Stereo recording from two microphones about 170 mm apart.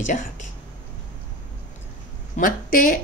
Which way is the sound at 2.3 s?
55° left (ahead or behind).